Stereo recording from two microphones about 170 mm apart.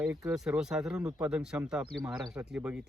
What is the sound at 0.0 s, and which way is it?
Speech, 5° right (ahead or behind).